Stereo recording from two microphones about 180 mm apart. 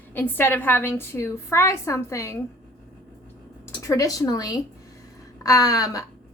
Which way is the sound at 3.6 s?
15° left (ahead or behind).